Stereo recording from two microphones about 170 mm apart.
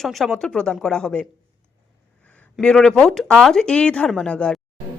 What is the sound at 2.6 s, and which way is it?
Speech, 5° left (ahead or behind).